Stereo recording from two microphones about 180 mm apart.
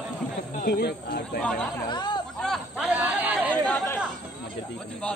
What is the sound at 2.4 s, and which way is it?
Chatter, centre (ahead or behind).